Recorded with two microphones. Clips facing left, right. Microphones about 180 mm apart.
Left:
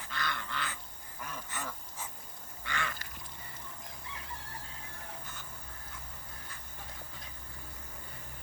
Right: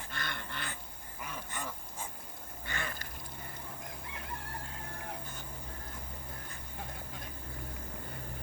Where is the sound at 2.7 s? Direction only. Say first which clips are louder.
Left 2 dB; 45° right (ahead or behind).